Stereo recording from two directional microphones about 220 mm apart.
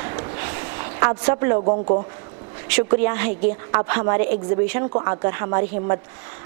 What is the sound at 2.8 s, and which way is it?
A woman's voice, 20° right (ahead or behind).